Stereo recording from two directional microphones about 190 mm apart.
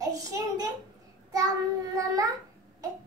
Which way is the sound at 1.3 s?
20° right (ahead or behind).